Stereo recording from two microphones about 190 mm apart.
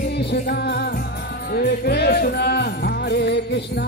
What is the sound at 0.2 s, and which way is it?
Music, 60° left (ahead or behind).